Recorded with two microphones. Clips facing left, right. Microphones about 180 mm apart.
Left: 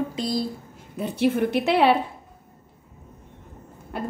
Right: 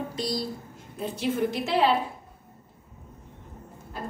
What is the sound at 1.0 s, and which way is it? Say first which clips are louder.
Speech: left 5 dB; 60° left (ahead or behind).